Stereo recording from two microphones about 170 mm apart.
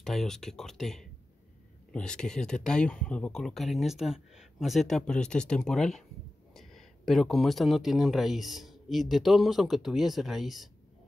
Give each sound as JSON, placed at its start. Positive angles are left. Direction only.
{"t": 0.0, "sound": "speech", "side_deg": 0}